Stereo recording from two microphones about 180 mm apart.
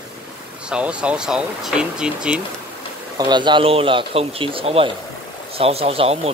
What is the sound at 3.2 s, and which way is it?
Speech, 25° right (ahead or behind).